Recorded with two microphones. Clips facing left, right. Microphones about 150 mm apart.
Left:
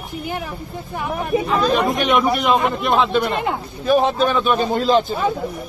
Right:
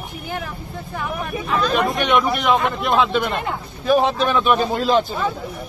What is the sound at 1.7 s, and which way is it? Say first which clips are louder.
Speech: even; centre (ahead or behind).